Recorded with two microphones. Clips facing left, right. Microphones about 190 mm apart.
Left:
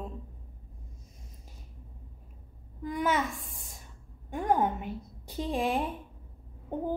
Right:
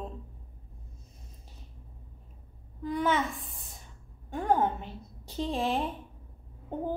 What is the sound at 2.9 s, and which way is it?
Speech, 10° left (ahead or behind).